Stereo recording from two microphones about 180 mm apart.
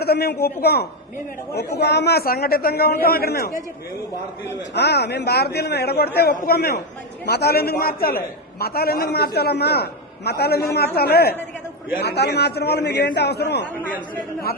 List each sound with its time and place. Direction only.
0.0 s a man's voice: 60° left (ahead or behind)
4.7 s a man's voice: 70° left (ahead or behind)